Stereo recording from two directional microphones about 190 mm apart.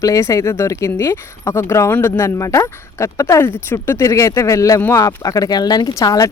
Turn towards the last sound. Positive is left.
turn(degrees=20)  # may be behind; listen again after turning